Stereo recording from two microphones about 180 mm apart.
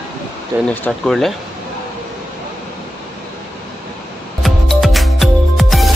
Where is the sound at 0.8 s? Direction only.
Centre (ahead or behind).